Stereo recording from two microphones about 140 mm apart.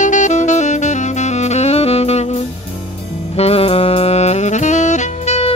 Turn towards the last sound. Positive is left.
turn(degrees=50)  # may be behind; listen again after turning